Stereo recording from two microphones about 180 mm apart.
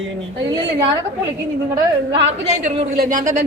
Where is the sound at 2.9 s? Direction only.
45° right (ahead or behind).